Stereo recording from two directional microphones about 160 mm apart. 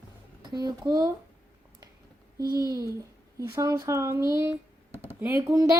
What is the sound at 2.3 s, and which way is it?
A child's voice, 25° right (ahead or behind).